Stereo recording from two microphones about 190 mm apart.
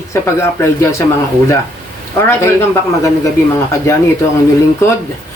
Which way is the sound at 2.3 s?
15° left (ahead or behind).